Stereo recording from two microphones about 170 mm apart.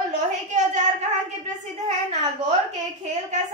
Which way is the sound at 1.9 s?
40° right (ahead or behind).